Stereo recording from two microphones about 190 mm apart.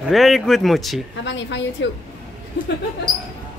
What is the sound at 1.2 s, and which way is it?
Speech, 70° left (ahead or behind).